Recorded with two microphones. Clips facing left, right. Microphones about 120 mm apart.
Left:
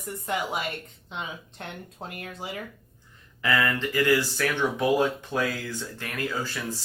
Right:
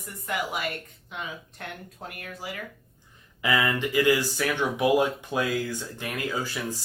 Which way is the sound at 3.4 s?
15° right (ahead or behind).